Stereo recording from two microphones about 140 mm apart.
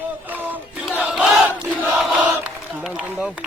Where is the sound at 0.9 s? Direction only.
5° right (ahead or behind).